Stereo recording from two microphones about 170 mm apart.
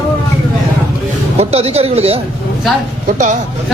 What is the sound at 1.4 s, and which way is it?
Speech, 40° right (ahead or behind).